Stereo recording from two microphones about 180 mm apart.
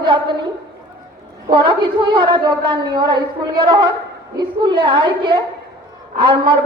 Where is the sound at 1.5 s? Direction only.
30° right (ahead or behind).